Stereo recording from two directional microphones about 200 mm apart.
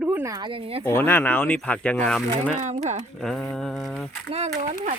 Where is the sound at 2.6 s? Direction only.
35° right (ahead or behind).